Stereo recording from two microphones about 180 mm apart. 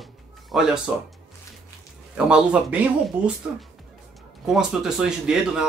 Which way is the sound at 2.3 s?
5° right (ahead or behind).